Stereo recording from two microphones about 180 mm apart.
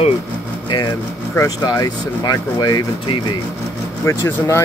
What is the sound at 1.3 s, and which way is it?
Speech, 20° left (ahead or behind).